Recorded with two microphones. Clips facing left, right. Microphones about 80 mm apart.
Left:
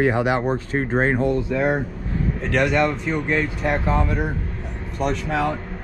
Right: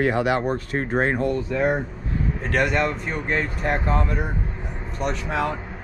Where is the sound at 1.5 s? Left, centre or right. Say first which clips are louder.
Left 1 dB; centre.